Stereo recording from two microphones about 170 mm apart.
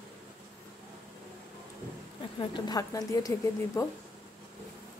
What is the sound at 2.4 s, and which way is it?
A woman's voice, 25° left (ahead or behind).